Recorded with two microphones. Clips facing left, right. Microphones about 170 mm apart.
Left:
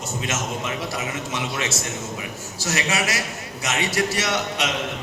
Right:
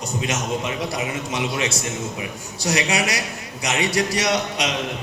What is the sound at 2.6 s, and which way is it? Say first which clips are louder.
Speech: right 3 dB; 15° right (ahead or behind).